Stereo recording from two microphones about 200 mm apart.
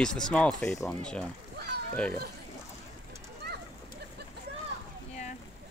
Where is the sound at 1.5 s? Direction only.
55° right (ahead or behind).